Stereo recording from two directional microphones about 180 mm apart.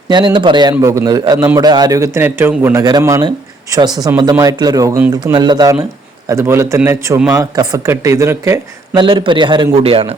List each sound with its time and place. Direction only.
0.1 s a man's voice: 25° right (ahead or behind)
5.1 s a man's voice: 25° right (ahead or behind)
9.0 s a man's voice: 25° right (ahead or behind)